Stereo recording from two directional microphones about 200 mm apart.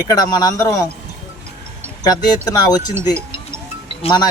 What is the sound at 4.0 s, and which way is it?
Speech, 25° left (ahead or behind).